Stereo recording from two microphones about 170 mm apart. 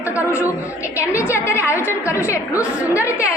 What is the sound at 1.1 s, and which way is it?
Speech, 10° right (ahead or behind).